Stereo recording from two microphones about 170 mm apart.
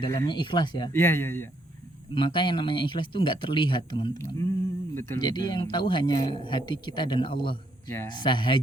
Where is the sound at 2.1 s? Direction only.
30° left (ahead or behind).